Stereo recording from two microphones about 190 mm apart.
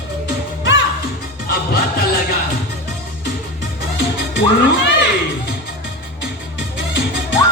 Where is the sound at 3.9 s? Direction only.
65° left (ahead or behind).